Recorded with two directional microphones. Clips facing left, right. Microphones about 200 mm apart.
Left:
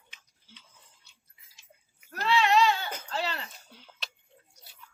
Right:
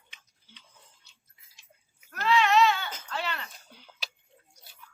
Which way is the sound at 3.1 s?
30° left (ahead or behind).